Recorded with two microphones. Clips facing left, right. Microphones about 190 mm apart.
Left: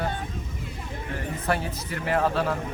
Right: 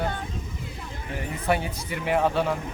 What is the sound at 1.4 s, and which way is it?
Speech, 10° right (ahead or behind).